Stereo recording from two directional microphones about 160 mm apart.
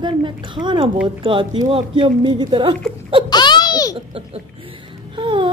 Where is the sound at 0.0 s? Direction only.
30° right (ahead or behind).